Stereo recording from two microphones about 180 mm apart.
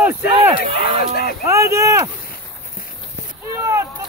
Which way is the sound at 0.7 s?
35° right (ahead or behind).